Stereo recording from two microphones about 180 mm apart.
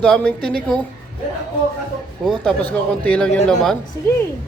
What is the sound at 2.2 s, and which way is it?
A man's voice, centre (ahead or behind).